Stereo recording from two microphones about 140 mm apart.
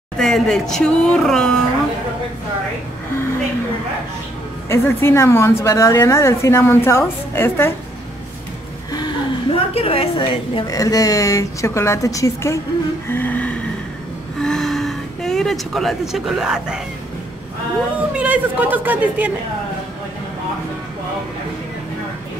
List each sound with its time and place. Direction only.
0.2 s speech: 5° left (ahead or behind)
4.6 s a woman's voice: 20° left (ahead or behind)
8.9 s a sound: 30° left (ahead or behind)
9.8 s a woman's voice: 40° left (ahead or behind)
10.7 s speech: 25° left (ahead or behind)
13.1 s a sound: 10° left (ahead or behind); by 16.8 s 5° right (ahead or behind)
17.9 s speech: 10° right (ahead or behind)